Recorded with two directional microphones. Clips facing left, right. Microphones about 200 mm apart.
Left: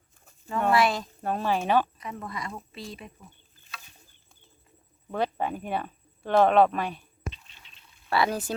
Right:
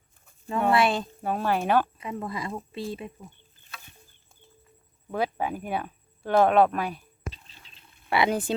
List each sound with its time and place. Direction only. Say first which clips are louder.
0.7 s speech: right 1 dB; 30° right (ahead or behind)
1.2 s speech: even; 5° right (ahead or behind)
2.0 s speech: right 4 dB; 25° right (ahead or behind)
5.1 s speech: even; 5° right (ahead or behind)
7.3 s toothbrush: left 1 dB; 35° right (ahead or behind)
8.1 s speech: right 2 dB; 20° right (ahead or behind)